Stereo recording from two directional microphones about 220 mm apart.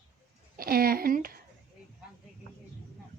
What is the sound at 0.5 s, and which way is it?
Speech, 45° right (ahead or behind).